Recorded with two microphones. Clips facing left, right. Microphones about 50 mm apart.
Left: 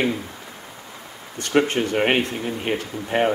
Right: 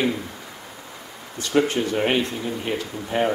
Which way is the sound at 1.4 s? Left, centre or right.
Left.